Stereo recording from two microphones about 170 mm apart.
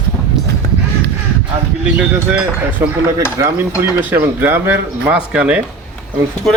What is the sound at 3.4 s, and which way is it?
Cutlery, 20° right (ahead or behind).